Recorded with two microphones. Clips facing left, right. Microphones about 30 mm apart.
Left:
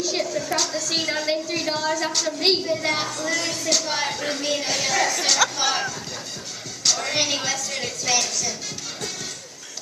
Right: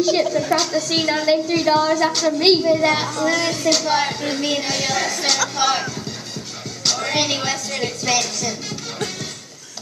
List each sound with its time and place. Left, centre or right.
0.0 s a woman's voice: right
3.3 s a woman's voice: right
5.6 s a woman's voice: centre